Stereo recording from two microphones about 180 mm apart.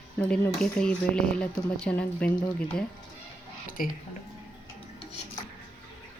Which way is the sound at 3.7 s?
50° left (ahead or behind).